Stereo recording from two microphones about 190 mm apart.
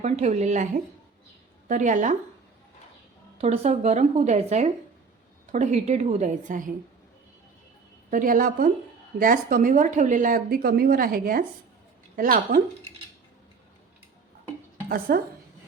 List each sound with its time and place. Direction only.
0.0 s a woman's voice: 35° right (ahead or behind)
3.3 s a woman's voice: 30° right (ahead or behind)
8.1 s speech: 45° right (ahead or behind)
14.8 s speech: 50° right (ahead or behind)